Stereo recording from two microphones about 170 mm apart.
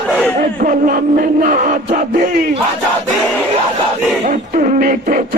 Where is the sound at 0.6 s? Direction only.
55° right (ahead or behind).